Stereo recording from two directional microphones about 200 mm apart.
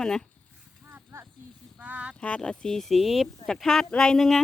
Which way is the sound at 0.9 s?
10° right (ahead or behind).